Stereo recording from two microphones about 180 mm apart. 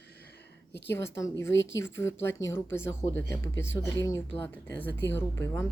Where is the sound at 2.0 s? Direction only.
15° left (ahead or behind).